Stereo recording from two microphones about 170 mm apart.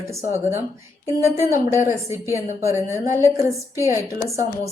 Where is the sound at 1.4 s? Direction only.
15° right (ahead or behind).